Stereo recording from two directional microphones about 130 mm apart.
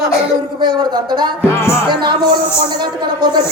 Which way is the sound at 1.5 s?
20° left (ahead or behind).